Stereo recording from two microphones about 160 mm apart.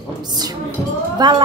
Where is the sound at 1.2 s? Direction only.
30° right (ahead or behind).